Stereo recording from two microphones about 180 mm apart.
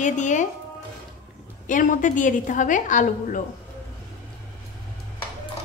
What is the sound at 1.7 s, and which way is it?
A woman's voice, 45° left (ahead or behind).